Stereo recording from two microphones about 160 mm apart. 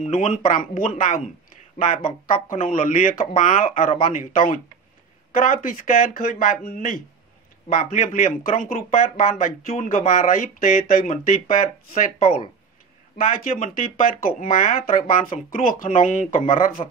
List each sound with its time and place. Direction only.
0.0 s speech: 55° left (ahead or behind)
12.2 s speech: 40° left (ahead or behind)
13.7 s speech: 60° left (ahead or behind)